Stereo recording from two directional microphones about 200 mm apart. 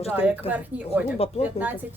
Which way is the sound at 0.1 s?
5° right (ahead or behind).